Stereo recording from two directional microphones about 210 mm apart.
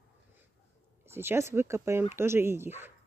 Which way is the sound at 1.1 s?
10° right (ahead or behind).